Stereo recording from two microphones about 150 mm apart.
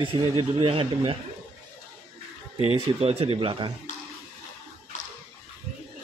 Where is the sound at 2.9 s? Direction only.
40° right (ahead or behind).